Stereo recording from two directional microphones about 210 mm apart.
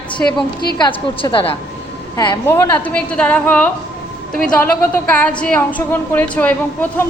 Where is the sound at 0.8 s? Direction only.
25° left (ahead or behind).